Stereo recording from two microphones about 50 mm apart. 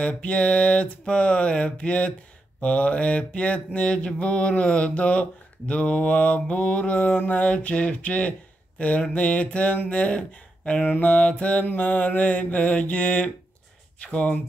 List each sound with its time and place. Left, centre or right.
0.0 s mantra: left
10.9 s mantra: left